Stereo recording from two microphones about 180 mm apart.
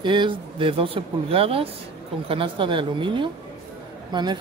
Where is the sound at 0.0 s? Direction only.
25° right (ahead or behind).